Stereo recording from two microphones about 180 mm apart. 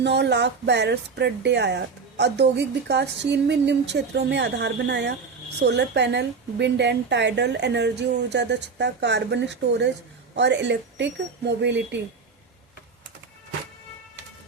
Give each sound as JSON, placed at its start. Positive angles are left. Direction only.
{"t": 0.0, "sound": "speech", "side_deg": -70}